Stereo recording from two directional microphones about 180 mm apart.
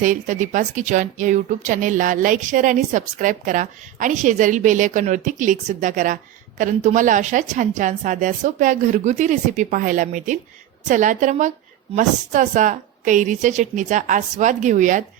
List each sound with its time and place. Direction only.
0.0 s a woman's voice: 45° right (ahead or behind)